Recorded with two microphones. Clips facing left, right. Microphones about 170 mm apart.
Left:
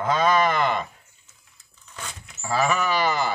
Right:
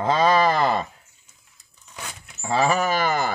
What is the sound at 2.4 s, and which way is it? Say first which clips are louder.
Speech: right 2 dB; 30° right (ahead or behind).